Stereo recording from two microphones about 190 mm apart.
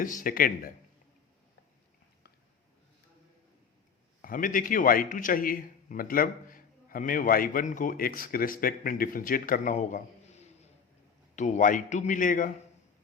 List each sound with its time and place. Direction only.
0.0 s a man's voice: 45° left (ahead or behind)
4.2 s a man's voice: 45° left (ahead or behind)